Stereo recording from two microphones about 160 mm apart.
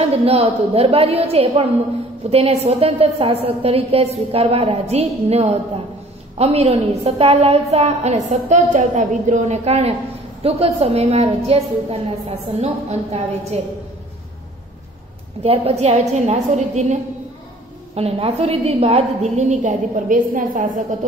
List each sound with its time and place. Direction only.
0.0 s a woman's voice: 40° right (ahead or behind)
15.4 s a woman's voice: 40° right (ahead or behind); by 20.8 s 55° right (ahead or behind)